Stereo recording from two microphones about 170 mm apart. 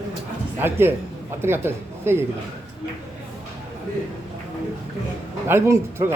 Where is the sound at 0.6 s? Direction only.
15° right (ahead or behind).